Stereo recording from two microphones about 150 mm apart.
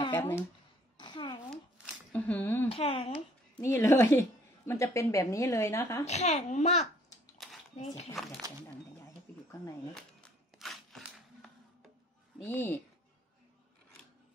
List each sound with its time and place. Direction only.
0.1 s speech: 10° left (ahead or behind)
0.9 s a sound: 30° left (ahead or behind)
1.5 s shuffling cards: centre (ahead or behind)
2.7 s speech: 40° left (ahead or behind)
3.6 s a woman's voice: 15° left (ahead or behind)
6.0 s a child's voice: 50° left (ahead or behind)
7.4 s a sound: centre (ahead or behind)
8.2 s speech: centre (ahead or behind)
9.9 s a sound: centre (ahead or behind)
12.4 s speech: 15° left (ahead or behind)